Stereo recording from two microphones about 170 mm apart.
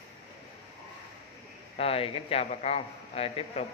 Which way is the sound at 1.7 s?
35° left (ahead or behind).